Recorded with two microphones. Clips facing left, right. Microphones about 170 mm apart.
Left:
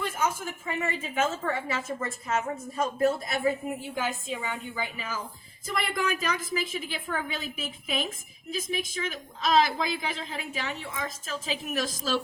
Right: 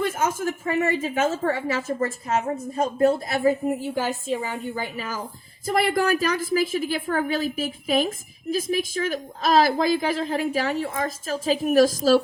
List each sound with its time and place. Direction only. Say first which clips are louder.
0.0 s a woman's voice: right 6 dB; 45° right (ahead or behind)